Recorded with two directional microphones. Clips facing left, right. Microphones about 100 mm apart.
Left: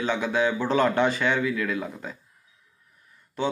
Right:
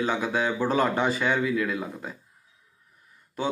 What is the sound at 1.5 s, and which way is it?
Speech, 20° right (ahead or behind).